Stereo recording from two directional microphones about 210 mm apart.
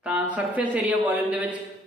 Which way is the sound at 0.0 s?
5° right (ahead or behind).